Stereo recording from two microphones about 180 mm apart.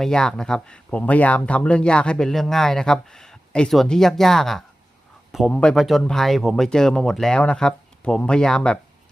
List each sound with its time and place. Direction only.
0.0 s speech: 5° left (ahead or behind)